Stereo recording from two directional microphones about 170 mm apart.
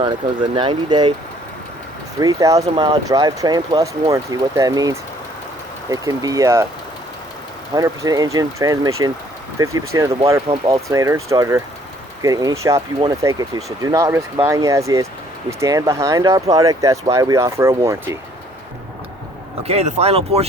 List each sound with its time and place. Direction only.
0.0 s speech: 30° right (ahead or behind)
2.1 s speech: 20° right (ahead or behind)
7.8 s speech: 20° right (ahead or behind)
19.6 s speech: 40° right (ahead or behind)